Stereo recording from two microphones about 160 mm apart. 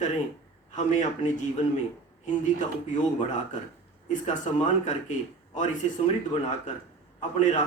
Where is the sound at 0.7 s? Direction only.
50° left (ahead or behind).